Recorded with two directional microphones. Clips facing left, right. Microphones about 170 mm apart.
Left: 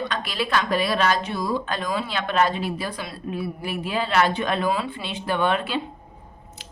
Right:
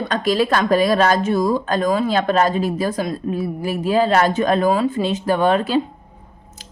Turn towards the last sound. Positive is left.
turn(degrees=-40)  # may be behind; listen again after turning